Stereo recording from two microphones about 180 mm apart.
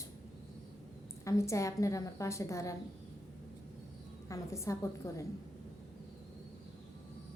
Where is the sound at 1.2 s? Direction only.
15° left (ahead or behind).